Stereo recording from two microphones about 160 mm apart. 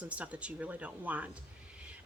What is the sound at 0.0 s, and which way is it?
A woman's voice, 10° right (ahead or behind).